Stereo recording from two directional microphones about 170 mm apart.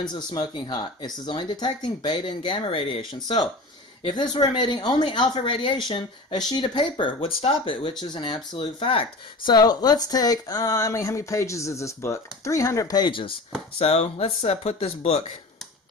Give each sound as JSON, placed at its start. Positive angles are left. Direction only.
{"t": 0.1, "sound": "speech", "side_deg": 25}